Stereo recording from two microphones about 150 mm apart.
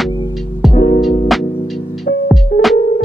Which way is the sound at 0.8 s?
30° left (ahead or behind).